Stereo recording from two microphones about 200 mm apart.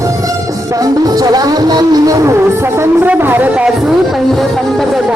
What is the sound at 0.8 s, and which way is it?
Music, 20° right (ahead or behind).